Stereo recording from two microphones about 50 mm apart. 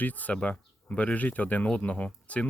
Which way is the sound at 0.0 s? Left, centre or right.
Left.